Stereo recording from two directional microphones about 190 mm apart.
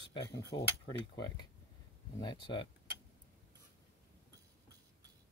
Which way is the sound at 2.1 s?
25° left (ahead or behind).